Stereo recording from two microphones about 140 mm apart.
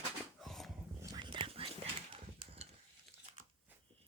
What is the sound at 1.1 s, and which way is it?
Whispering, 35° right (ahead or behind).